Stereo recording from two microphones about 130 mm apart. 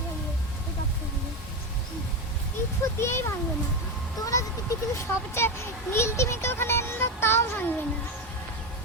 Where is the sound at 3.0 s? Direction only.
20° left (ahead or behind).